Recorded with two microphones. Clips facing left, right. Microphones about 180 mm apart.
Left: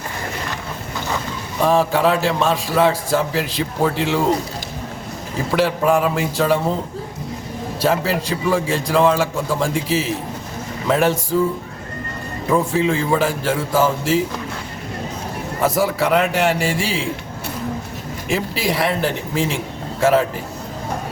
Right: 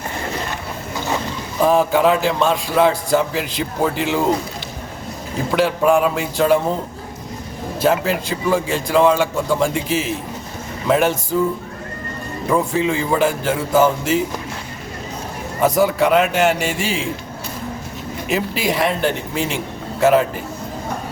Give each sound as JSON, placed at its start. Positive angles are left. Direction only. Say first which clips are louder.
{"t": 1.6, "sound": "a man's voice", "louder": "right 2 dB", "side_deg": 0}
{"t": 5.5, "sound": "a man's voice", "louder": "right 1 dB", "side_deg": 0}
{"t": 7.8, "sound": "a man's voice", "louder": "right 1 dB", "side_deg": 0}
{"t": 12.5, "sound": "a man's voice", "louder": "left 1 dB", "side_deg": 0}
{"t": 15.6, "sound": "a man's voice", "louder": "right 3 dB", "side_deg": 0}
{"t": 18.3, "sound": "a man's voice", "louder": "right 1 dB", "side_deg": 0}